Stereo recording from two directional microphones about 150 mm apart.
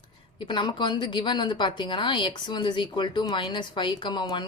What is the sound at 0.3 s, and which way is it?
Speech, 30° left (ahead or behind).